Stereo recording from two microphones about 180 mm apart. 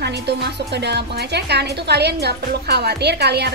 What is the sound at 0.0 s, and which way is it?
A woman's voice, 70° right (ahead or behind).